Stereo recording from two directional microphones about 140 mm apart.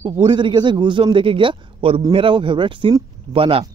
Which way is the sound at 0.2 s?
35° right (ahead or behind).